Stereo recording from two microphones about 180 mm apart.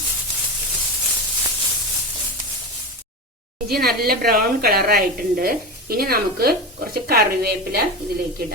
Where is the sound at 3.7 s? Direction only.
60° right (ahead or behind).